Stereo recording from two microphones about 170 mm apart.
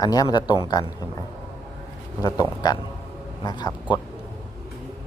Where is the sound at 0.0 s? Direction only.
25° left (ahead or behind).